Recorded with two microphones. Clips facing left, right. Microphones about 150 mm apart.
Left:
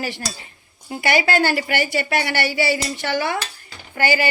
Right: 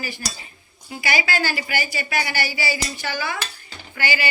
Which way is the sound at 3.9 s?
45° left (ahead or behind).